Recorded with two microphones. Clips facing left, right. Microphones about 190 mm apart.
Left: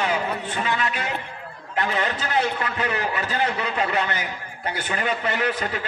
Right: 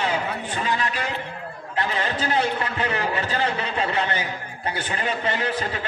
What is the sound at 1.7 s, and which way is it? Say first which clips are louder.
A man's voice: left 1 dB; 30° right (ahead or behind).